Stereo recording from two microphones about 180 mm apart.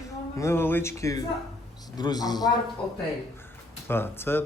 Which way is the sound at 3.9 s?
10° left (ahead or behind).